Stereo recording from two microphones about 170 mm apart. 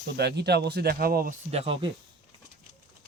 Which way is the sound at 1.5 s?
35° right (ahead or behind).